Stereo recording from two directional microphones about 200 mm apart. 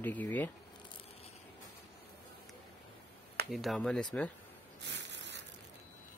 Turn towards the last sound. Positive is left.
turn(degrees=-60)  # may be behind; listen again after turning